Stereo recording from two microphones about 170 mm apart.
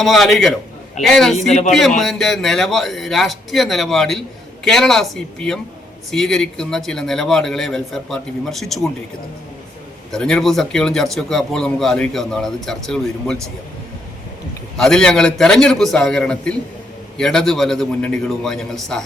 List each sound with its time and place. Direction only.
0.0 s a man's voice: centre (ahead or behind)
1.4 s speech: 45° left (ahead or behind)
2.0 s a man's voice: centre (ahead or behind)
10.1 s a man's voice: 5° left (ahead or behind)
14.8 s a man's voice: 5° left (ahead or behind)